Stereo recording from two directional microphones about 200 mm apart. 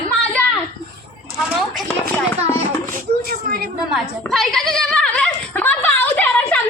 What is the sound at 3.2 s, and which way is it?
Speech, 50° right (ahead or behind).